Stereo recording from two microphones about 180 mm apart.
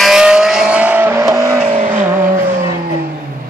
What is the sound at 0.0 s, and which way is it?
Vehicle, 5° right (ahead or behind).